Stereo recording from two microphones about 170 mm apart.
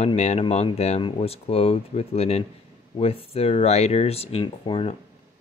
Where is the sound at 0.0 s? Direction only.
40° left (ahead or behind).